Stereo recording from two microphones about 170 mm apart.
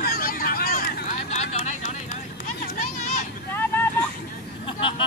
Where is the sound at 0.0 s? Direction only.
60° left (ahead or behind).